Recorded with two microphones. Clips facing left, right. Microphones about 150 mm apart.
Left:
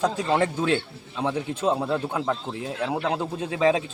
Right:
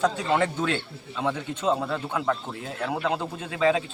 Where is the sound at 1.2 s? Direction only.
30° left (ahead or behind).